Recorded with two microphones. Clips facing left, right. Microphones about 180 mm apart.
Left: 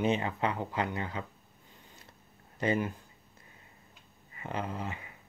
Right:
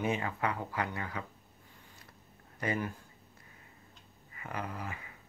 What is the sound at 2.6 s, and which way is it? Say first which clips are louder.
Speech: left 5 dB; 20° left (ahead or behind).